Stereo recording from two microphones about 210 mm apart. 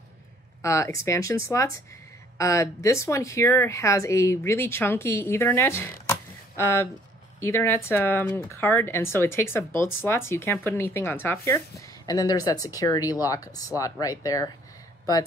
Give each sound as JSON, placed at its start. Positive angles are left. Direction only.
{"t": 0.6, "sound": "speech", "side_deg": 15}